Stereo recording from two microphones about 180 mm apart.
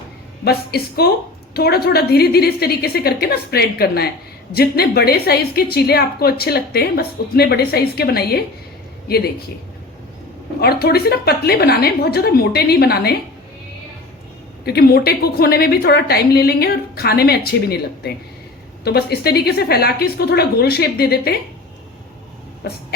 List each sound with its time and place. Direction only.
0.4 s a woman's voice: 60° left (ahead or behind)
10.6 s a woman's voice: 60° left (ahead or behind)
14.6 s a woman's voice: 60° left (ahead or behind)
22.6 s a woman's voice: 65° left (ahead or behind)